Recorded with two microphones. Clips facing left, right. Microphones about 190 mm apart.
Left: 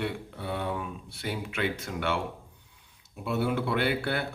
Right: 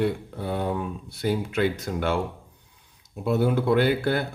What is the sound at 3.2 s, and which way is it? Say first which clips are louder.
Speech: right 6 dB; 40° right (ahead or behind).